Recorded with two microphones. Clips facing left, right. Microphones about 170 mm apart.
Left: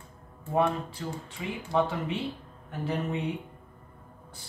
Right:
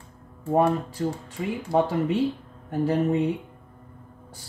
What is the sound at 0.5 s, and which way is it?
Speech, 45° right (ahead or behind).